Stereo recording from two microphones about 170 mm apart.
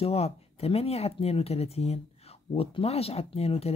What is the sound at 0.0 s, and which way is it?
Speech, 35° left (ahead or behind).